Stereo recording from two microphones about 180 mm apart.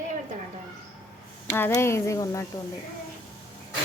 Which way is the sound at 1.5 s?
15° left (ahead or behind).